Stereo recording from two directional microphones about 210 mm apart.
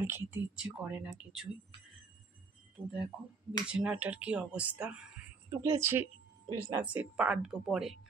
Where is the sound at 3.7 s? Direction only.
5° right (ahead or behind).